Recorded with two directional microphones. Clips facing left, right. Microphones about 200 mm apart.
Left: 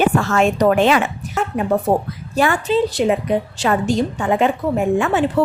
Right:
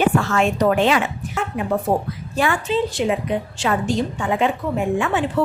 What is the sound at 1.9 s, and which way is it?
Speech, 55° left (ahead or behind).